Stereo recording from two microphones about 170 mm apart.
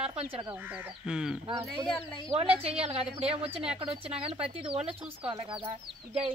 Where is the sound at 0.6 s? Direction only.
5° right (ahead or behind).